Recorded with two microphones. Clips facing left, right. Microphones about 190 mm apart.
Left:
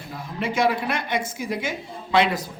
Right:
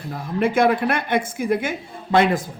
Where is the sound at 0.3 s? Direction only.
55° right (ahead or behind).